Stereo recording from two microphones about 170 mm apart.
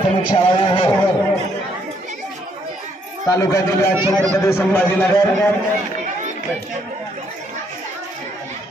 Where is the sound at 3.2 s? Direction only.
20° left (ahead or behind).